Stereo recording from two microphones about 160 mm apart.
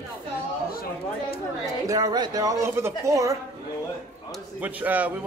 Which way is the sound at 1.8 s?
25° right (ahead or behind).